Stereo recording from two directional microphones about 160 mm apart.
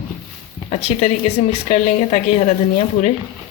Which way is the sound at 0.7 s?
40° left (ahead or behind).